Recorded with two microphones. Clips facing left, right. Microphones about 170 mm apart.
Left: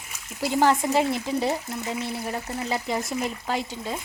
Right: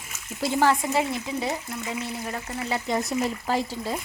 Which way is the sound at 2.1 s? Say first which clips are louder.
Left 2 dB; 10° left (ahead or behind).